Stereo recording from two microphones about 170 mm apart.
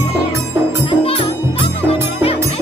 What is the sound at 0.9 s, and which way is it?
Music, 35° left (ahead or behind).